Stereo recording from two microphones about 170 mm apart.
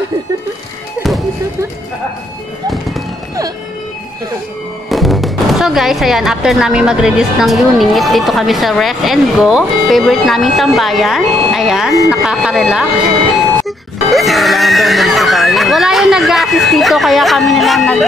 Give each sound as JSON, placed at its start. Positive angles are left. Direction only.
{"t": 4.8, "sound": "speech", "side_deg": 0}